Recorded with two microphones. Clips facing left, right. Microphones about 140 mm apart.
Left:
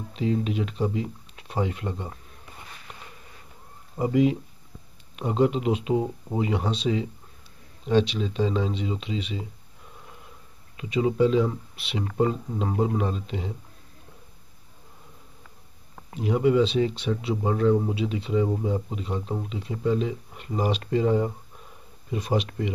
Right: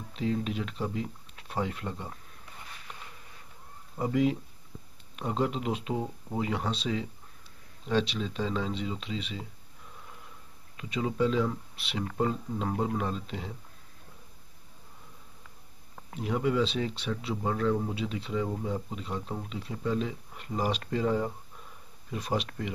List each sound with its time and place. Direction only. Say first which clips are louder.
0.1 s speech: left 5 dB; 5° left (ahead or behind)
3.9 s speech: left 5 dB; 10° left (ahead or behind)
6.0 s speech: left 5 dB; 20° left (ahead or behind)
6.4 s speech: left 6 dB; 5° left (ahead or behind)
10.8 s speech: left 7 dB; 5° left (ahead or behind)
16.2 s speech: left 7 dB; 5° left (ahead or behind)